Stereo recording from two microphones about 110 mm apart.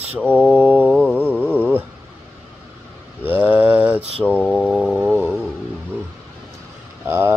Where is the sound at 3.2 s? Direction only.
15° right (ahead or behind).